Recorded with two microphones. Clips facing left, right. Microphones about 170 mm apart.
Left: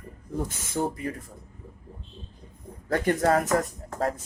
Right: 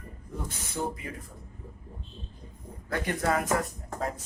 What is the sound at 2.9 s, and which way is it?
Speech, 45° left (ahead or behind).